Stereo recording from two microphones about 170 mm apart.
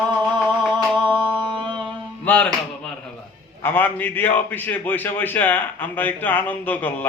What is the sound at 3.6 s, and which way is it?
A man's voice, 10° left (ahead or behind).